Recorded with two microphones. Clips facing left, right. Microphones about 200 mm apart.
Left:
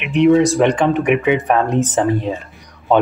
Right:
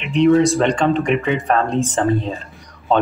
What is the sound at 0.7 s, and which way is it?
Speech, 15° left (ahead or behind).